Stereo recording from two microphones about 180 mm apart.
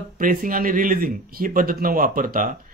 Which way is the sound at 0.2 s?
50° right (ahead or behind).